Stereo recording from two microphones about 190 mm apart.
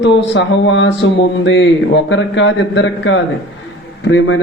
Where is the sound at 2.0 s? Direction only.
75° left (ahead or behind).